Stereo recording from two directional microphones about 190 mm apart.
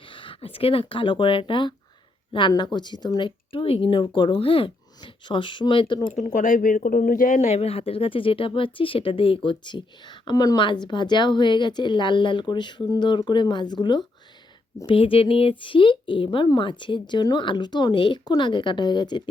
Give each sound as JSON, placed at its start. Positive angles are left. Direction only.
{"t": 0.0, "sound": "speech", "side_deg": 25}
{"t": 6.1, "sound": "speech", "side_deg": 40}